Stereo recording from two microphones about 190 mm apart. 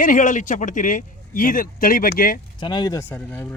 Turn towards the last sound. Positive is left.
turn(degrees=10)  # may be behind; listen again after turning